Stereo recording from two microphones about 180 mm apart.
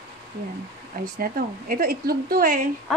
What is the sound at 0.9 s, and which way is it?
A woman's voice, 55° right (ahead or behind).